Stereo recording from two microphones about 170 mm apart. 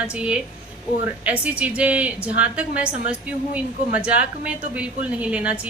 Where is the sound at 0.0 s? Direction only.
5° right (ahead or behind).